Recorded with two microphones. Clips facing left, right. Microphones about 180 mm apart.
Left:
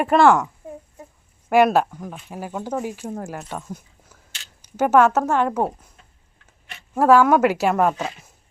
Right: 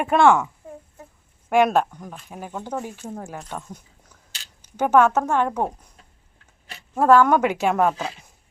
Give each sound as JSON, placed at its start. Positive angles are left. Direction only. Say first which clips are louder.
{"t": 0.0, "sound": "speech", "louder": "left 1 dB", "side_deg": 0}
{"t": 1.5, "sound": "a woman's voice", "louder": "left 2 dB", "side_deg": 5}
{"t": 6.9, "sound": "speech", "louder": "left 1 dB", "side_deg": 10}